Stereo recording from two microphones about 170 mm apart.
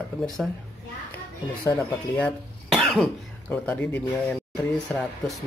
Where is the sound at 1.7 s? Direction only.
10° left (ahead or behind).